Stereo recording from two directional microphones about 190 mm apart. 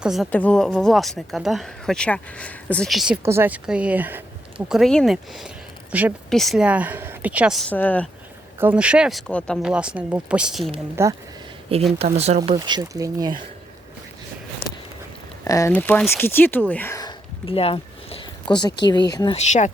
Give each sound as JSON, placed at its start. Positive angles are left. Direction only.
{"t": 0.0, "sound": "a woman's voice", "side_deg": 0}
{"t": 3.2, "sound": "speech", "side_deg": -10}
{"t": 4.7, "sound": "speech", "side_deg": 0}
{"t": 8.5, "sound": "speech", "side_deg": -10}
{"t": 9.7, "sound": "speech", "side_deg": -5}
{"t": 11.0, "sound": "speech", "side_deg": -15}
{"t": 11.9, "sound": "speech", "side_deg": -35}
{"t": 12.5, "sound": "speech", "side_deg": -25}
{"t": 14.6, "sound": "a sound", "side_deg": 15}
{"t": 15.4, "sound": "speech", "side_deg": 15}
{"t": 19.5, "sound": "speech", "side_deg": 40}